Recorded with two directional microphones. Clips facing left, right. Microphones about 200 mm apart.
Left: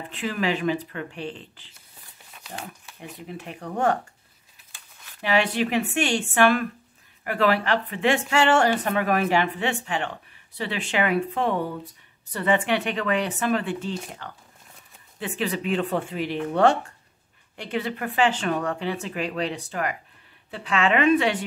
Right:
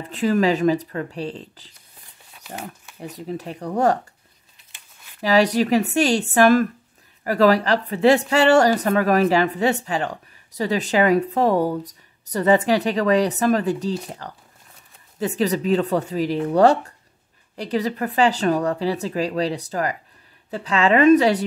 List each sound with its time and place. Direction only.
0.1 s a woman's voice: 40° right (ahead or behind)
3.0 s a woman's voice: 35° right (ahead or behind)
5.2 s a woman's voice: 40° right (ahead or behind)